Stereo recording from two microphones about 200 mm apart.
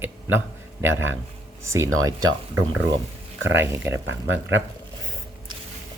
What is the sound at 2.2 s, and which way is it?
Speech, 90° right.